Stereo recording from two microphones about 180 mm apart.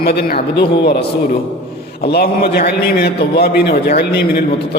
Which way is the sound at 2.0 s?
60° left (ahead or behind).